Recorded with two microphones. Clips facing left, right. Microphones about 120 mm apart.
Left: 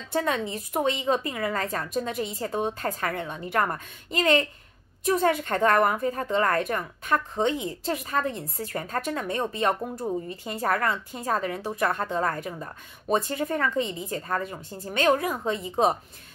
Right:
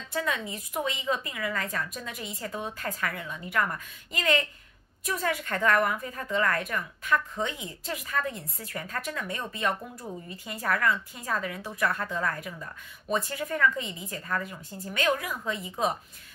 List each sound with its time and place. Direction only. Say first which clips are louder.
0.1 s a woman's voice: left 5 dB; 35° left (ahead or behind)